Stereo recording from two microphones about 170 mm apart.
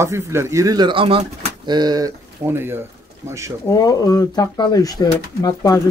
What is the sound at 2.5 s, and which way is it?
Speech, 15° right (ahead or behind).